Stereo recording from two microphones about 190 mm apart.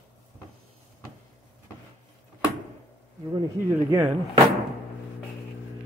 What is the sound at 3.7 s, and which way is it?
Speech, 10° right (ahead or behind).